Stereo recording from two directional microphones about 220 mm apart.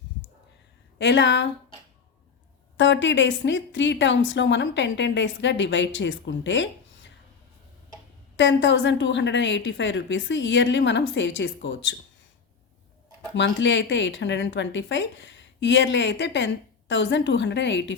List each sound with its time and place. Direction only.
0.9 s a woman's voice: 55° left (ahead or behind)
2.7 s a woman's voice: 55° left (ahead or behind)
8.4 s a woman's voice: 55° left (ahead or behind)
13.3 s a woman's voice: 55° left (ahead or behind)